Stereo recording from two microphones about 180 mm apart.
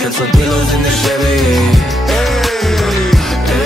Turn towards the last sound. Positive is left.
turn(degrees=0)  # may be behind; listen again after turning